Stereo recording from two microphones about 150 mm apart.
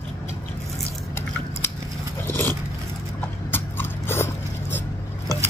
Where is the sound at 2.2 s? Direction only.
15° left (ahead or behind).